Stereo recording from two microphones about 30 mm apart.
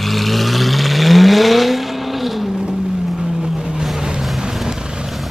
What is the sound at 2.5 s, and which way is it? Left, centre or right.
Vehicle, right.